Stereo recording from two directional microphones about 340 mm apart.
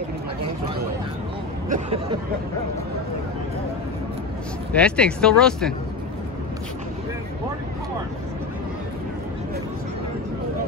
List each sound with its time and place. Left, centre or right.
1.7 s speech: centre
4.7 s speech: centre